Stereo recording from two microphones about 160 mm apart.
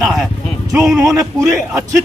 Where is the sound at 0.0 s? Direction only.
Centre (ahead or behind).